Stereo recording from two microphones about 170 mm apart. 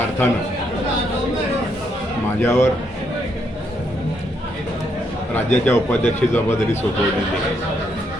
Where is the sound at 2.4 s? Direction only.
15° left (ahead or behind).